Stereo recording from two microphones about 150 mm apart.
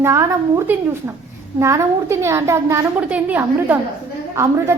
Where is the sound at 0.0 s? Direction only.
20° right (ahead or behind).